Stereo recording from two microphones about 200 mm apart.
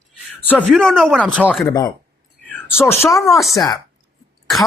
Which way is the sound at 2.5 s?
10° left (ahead or behind).